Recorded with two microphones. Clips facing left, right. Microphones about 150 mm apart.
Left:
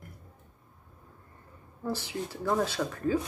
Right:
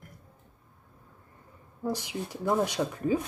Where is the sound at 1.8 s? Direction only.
15° right (ahead or behind).